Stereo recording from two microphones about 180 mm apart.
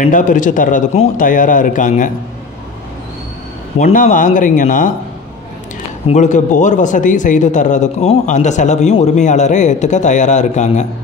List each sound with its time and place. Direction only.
0.0 s a man's voice: 45° left (ahead or behind)
3.7 s a man's voice: 40° left (ahead or behind)
6.0 s speech: 40° left (ahead or behind)